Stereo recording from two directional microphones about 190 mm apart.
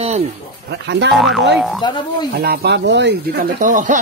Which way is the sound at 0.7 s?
70° right (ahead or behind).